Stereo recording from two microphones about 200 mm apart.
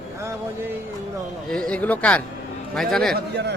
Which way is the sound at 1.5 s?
5° left (ahead or behind).